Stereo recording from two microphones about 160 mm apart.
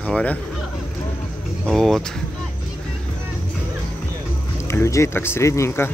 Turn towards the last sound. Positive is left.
turn(degrees=15)  # may be behind; listen again after turning